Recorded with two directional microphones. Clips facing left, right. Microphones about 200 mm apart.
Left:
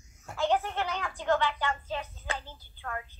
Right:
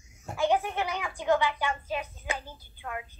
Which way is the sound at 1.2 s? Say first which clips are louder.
Right 2 dB; 10° right (ahead or behind).